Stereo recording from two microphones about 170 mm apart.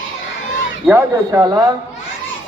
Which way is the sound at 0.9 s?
20° right (ahead or behind).